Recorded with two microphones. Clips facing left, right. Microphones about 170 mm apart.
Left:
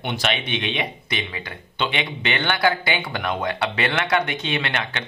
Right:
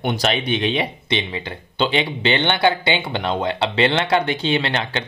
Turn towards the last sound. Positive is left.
turn(degrees=-30)  # may be behind; listen again after turning